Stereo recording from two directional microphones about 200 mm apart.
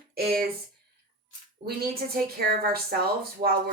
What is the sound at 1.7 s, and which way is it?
A woman's voice, 50° right (ahead or behind).